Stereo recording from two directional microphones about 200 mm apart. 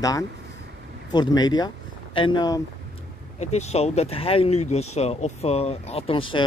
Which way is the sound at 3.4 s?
35° left (ahead or behind).